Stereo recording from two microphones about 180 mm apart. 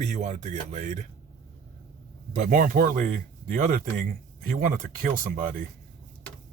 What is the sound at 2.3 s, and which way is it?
Speech, 45° right (ahead or behind).